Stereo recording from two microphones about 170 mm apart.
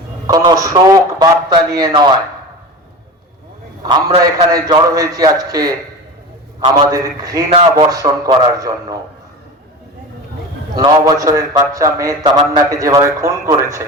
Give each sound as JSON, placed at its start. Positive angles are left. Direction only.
{"t": 0.3, "sound": "a man's voice", "side_deg": -20}
{"t": 3.8, "sound": "a man's voice", "side_deg": -25}
{"t": 6.7, "sound": "a man's voice", "side_deg": -20}
{"t": 10.8, "sound": "a man's voice", "side_deg": -25}